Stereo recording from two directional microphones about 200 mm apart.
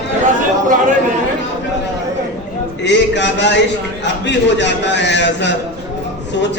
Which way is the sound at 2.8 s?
60° left (ahead or behind).